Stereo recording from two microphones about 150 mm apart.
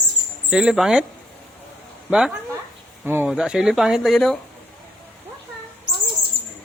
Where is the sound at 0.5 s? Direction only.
5° right (ahead or behind).